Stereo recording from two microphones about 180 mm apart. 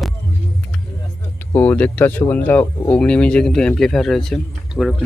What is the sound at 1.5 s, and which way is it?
Speech, 10° left (ahead or behind).